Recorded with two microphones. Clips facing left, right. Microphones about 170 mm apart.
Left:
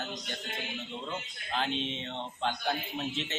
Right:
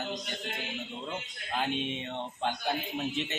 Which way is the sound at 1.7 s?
50° right (ahead or behind).